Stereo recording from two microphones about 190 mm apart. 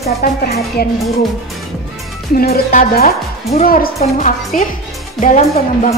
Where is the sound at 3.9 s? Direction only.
35° left (ahead or behind).